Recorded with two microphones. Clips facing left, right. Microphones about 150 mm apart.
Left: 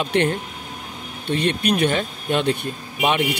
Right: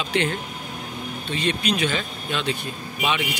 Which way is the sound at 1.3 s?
60° left (ahead or behind).